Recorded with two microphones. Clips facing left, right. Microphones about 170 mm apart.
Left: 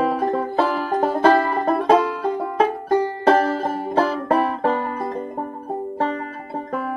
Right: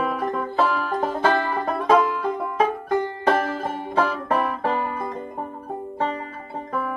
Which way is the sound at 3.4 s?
35° left (ahead or behind).